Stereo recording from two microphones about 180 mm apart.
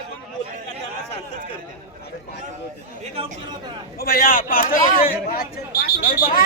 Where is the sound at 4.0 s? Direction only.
55° left (ahead or behind).